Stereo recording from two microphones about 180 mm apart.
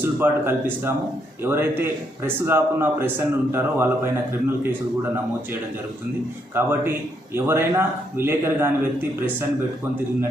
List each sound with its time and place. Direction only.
0.0 s a man's voice: 10° right (ahead or behind)
6.5 s a man's voice: 10° right (ahead or behind)